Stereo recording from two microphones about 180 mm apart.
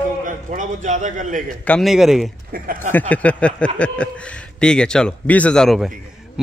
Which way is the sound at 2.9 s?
10° left (ahead or behind).